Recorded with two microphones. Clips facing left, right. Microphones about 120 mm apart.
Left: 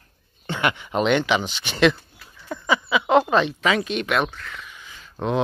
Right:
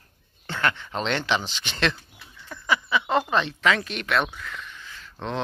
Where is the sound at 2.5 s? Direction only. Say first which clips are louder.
Left 3 dB; 20° left (ahead or behind).